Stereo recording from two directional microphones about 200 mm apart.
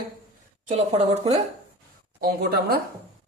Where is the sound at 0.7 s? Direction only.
30° right (ahead or behind).